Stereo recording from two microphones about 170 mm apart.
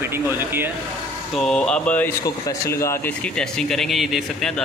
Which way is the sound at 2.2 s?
20° left (ahead or behind).